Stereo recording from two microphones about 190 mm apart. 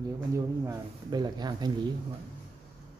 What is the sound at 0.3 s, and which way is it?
Speech, 20° right (ahead or behind).